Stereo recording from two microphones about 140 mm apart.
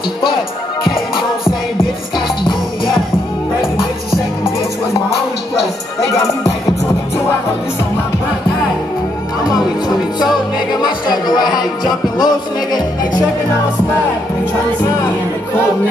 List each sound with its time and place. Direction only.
11.3 s music: 30° left (ahead or behind)